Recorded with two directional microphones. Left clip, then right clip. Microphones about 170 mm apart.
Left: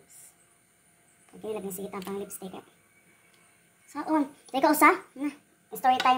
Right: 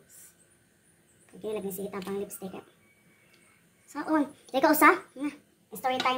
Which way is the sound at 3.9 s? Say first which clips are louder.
Even; centre (ahead or behind).